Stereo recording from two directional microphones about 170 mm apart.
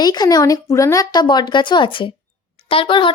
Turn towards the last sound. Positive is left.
turn(degrees=30)  # may be behind; listen again after turning